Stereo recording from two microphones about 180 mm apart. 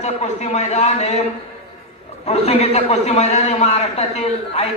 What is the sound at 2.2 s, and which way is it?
A man's voice, 35° left (ahead or behind).